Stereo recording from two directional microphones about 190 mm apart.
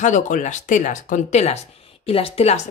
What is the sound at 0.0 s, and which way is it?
Speech, 40° left (ahead or behind).